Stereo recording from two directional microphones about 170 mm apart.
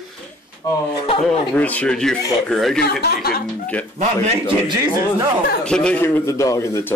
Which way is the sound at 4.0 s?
40° right (ahead or behind).